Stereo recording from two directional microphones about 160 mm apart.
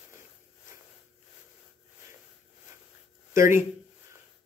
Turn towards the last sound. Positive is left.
turn(degrees=-15)  # may be behind; listen again after turning